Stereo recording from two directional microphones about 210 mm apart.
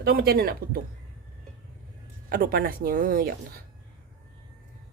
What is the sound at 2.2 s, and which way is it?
Speech, 45° right (ahead or behind).